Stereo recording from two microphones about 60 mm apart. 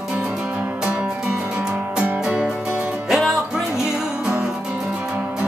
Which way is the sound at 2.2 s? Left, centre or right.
Centre.